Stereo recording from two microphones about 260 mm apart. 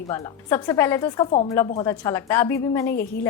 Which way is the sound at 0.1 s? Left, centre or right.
Centre.